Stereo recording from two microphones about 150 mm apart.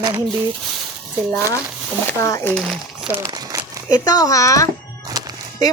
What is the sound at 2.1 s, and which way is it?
Speech, 20° left (ahead or behind).